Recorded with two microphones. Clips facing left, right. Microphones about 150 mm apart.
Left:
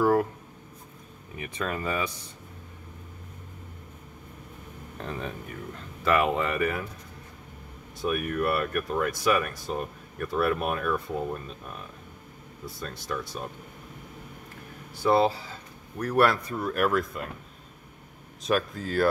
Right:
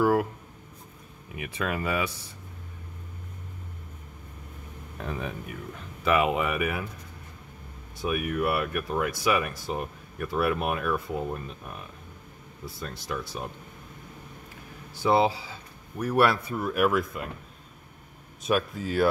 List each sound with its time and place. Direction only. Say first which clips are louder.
0.0 s speech: even; 5° right (ahead or behind)
1.3 s speech: right 1 dB; 10° right (ahead or behind)
4.9 s speech: right 1 dB; 10° right (ahead or behind)
8.0 s speech: even; 5° right (ahead or behind)
12.8 s speech: even; 5° right (ahead or behind)
15.0 s speech: even; 10° right (ahead or behind)
18.4 s speech: even; 5° right (ahead or behind)